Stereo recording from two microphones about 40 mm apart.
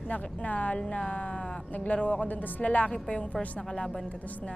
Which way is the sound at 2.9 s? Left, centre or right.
Left.